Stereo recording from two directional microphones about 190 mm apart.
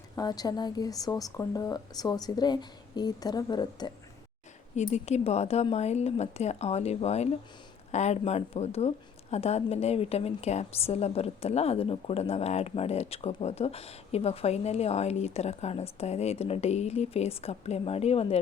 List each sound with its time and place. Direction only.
0.2 s speech: 20° left (ahead or behind)
4.8 s a woman's voice: 35° left (ahead or behind)